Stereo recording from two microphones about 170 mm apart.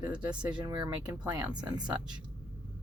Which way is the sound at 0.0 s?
5° right (ahead or behind).